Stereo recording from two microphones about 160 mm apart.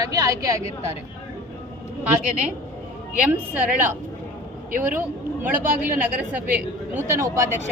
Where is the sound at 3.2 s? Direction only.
10° right (ahead or behind).